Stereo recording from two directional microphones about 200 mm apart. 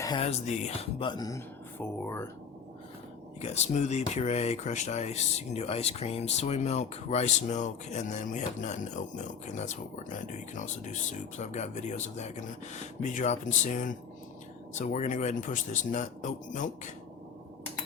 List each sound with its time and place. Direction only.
0.0 s speech: 20° left (ahead or behind)
0.3 s speech: 35° left (ahead or behind); by 2.2 s 10° left (ahead or behind)
3.4 s speech: 35° left (ahead or behind)